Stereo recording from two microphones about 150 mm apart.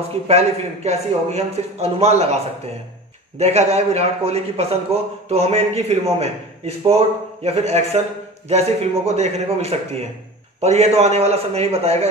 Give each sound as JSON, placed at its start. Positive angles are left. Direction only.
{"t": 0.3, "sound": "a man's voice", "side_deg": -45}